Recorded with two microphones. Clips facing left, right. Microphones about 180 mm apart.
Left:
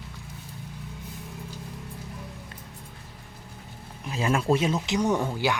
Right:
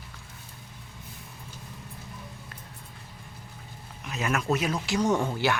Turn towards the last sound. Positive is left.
turn(degrees=15)  # may be behind; listen again after turning